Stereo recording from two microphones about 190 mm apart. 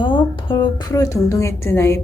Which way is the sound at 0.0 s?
25° left (ahead or behind).